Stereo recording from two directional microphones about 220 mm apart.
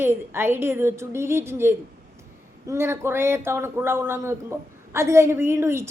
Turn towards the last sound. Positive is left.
turn(degrees=-10)  # may be behind; listen again after turning